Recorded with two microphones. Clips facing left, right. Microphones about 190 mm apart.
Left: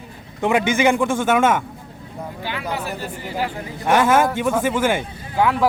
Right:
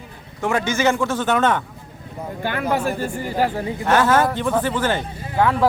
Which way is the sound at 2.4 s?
50° right (ahead or behind).